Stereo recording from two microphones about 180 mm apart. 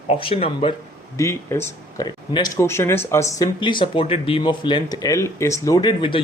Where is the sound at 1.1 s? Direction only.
15° left (ahead or behind).